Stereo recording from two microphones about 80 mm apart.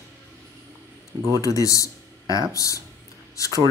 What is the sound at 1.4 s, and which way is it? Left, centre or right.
Speech, left.